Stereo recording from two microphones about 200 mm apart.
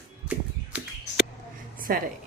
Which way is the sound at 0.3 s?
5° right (ahead or behind).